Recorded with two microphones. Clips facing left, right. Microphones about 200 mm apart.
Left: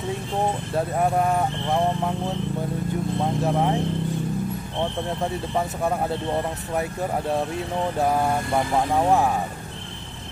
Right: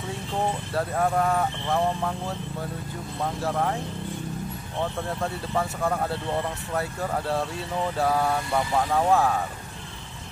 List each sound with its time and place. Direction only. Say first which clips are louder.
0.7 s speech: left 2 dB; 20° left (ahead or behind)
4.7 s speech: left 1 dB; 20° left (ahead or behind)